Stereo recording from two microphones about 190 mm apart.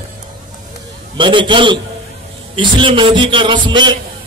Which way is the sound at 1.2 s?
25° right (ahead or behind).